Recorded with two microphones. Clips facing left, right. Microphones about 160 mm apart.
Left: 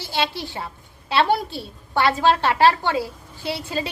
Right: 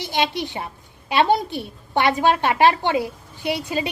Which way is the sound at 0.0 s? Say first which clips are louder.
Right 3 dB; 15° right (ahead or behind).